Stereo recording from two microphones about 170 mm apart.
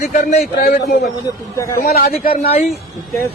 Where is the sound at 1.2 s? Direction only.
15° left (ahead or behind).